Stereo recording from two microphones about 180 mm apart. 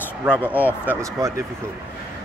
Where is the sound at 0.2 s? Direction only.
5° right (ahead or behind).